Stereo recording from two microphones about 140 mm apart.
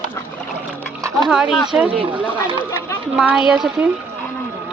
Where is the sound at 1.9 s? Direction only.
40° right (ahead or behind).